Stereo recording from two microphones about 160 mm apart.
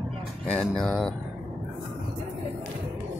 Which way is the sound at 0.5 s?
5° left (ahead or behind).